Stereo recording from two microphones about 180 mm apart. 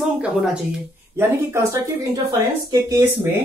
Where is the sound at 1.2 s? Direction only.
15° right (ahead or behind).